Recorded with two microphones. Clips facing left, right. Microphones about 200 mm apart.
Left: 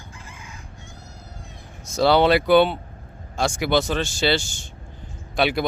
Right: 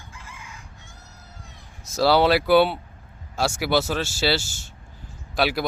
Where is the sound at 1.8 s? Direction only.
Centre (ahead or behind).